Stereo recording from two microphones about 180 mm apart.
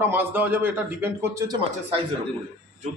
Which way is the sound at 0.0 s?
10° right (ahead or behind).